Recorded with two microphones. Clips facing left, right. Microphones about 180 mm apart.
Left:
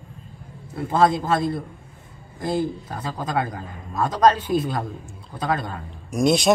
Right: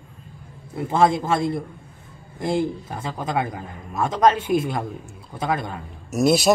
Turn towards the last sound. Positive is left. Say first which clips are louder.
# right 1 dB
turn(degrees=-5)  # may be behind; listen again after turning